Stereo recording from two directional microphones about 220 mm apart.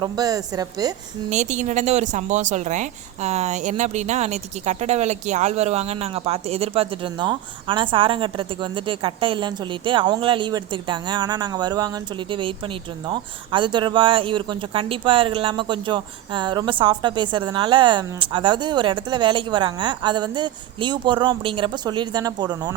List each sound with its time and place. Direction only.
0.0 s a woman's voice: 15° right (ahead or behind)
1.3 s a woman's voice: 35° right (ahead or behind)